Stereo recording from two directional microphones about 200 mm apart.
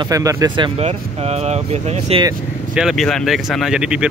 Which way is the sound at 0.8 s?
30° right (ahead or behind).